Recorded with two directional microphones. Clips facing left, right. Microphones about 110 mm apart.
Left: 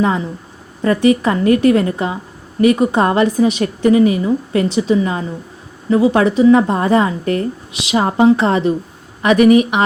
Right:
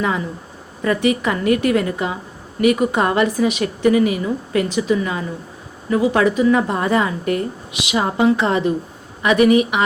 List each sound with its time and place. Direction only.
0.8 s a woman's voice: 35° left (ahead or behind)